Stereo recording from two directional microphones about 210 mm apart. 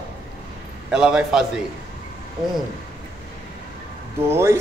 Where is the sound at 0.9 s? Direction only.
5° right (ahead or behind).